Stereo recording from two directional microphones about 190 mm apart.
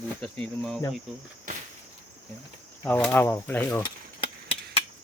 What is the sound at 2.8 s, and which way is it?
Speech, 10° left (ahead or behind).